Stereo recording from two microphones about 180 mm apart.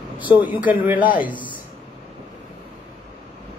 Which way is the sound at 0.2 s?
10° right (ahead or behind).